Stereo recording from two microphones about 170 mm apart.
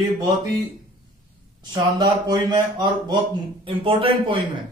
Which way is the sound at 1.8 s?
25° right (ahead or behind).